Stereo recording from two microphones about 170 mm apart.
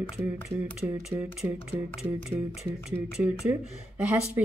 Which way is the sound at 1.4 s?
20° right (ahead or behind).